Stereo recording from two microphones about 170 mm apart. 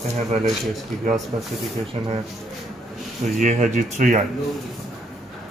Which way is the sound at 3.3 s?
45° right (ahead or behind).